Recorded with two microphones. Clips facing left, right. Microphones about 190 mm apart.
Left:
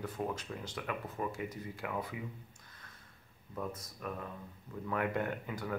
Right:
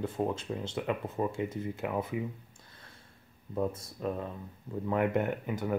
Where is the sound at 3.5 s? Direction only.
30° right (ahead or behind).